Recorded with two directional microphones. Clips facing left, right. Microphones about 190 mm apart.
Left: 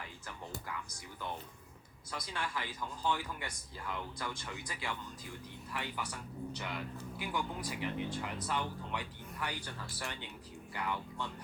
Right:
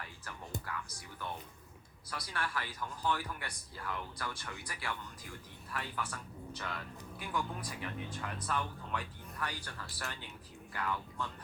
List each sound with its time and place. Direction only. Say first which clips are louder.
0.6 s music: right 1 dB; 15° left (ahead or behind)
2.0 s speech: even; 15° left (ahead or behind)